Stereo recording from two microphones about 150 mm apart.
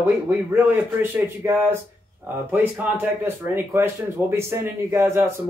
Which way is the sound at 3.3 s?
15° right (ahead or behind).